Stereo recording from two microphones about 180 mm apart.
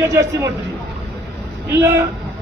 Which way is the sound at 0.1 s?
15° right (ahead or behind).